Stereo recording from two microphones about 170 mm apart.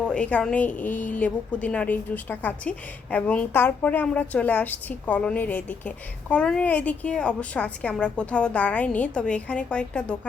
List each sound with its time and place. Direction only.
0.1 s a woman's voice: 5° left (ahead or behind)